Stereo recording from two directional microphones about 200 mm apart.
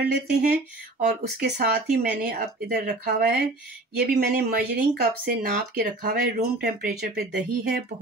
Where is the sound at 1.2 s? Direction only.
55° right (ahead or behind).